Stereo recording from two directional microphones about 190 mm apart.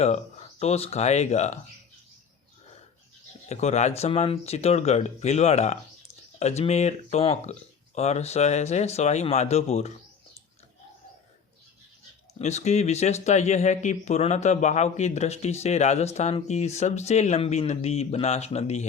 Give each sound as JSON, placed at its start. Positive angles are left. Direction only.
{"t": 0.6, "sound": "speech", "side_deg": 35}
{"t": 3.5, "sound": "speech", "side_deg": 35}
{"t": 12.3, "sound": "speech", "side_deg": 35}